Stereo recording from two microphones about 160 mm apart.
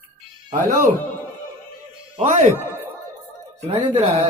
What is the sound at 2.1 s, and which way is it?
Speech, 45° right (ahead or behind).